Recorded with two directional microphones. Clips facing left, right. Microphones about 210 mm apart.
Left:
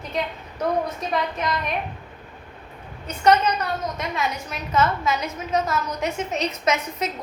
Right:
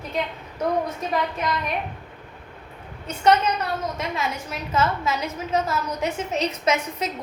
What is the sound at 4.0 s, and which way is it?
A woman's voice, 25° right (ahead or behind).